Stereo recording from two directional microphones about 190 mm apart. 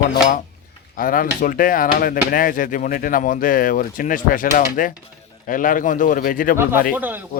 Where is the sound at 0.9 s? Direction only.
45° left (ahead or behind).